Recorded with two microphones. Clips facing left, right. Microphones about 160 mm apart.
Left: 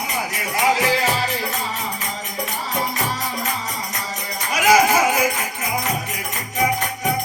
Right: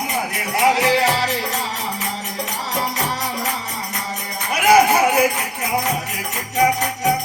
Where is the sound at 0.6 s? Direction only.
70° right (ahead or behind).